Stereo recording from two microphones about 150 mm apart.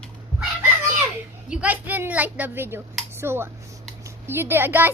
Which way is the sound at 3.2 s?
15° right (ahead or behind).